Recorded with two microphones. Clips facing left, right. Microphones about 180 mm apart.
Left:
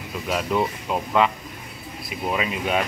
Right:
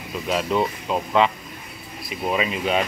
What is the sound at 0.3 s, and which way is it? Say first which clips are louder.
Speech: right 1 dB; 5° left (ahead or behind).